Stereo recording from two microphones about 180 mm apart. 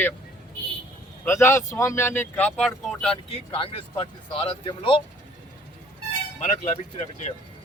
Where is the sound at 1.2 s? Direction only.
15° left (ahead or behind).